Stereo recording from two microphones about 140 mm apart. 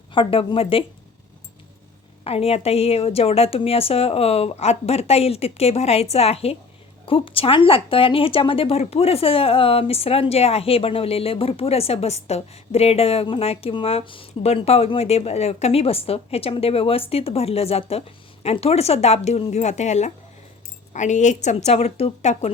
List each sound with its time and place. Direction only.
0.1 s a woman's voice: 40° left (ahead or behind)
2.2 s speech: 45° left (ahead or behind)